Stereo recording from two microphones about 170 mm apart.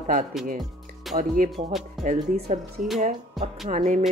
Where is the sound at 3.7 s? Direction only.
45° right (ahead or behind).